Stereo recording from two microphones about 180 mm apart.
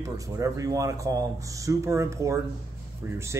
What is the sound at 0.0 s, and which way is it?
Speech, 20° right (ahead or behind).